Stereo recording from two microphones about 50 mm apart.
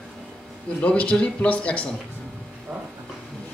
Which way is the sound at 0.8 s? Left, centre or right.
Left.